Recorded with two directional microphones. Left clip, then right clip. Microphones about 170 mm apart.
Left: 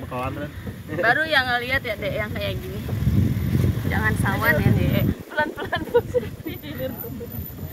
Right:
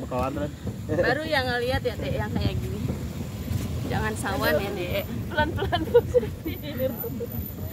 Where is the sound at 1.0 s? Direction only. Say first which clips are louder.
Left 6 dB; 40° left (ahead or behind).